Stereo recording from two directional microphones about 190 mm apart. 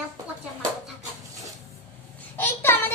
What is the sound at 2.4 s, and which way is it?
Child singing, 10° left (ahead or behind).